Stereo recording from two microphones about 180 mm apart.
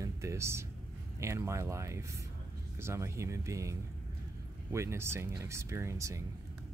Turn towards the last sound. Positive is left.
turn(degrees=-15)  # may be behind; listen again after turning